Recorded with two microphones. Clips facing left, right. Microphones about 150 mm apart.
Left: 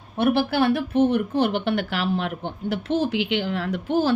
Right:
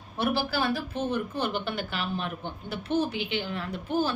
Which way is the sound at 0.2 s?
55° left (ahead or behind).